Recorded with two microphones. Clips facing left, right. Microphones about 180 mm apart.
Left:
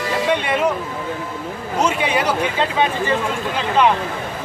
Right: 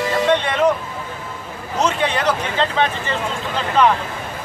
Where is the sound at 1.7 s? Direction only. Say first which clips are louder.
Even; 10° left (ahead or behind).